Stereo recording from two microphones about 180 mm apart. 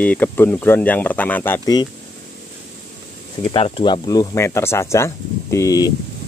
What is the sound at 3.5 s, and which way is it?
Speech, 30° left (ahead or behind).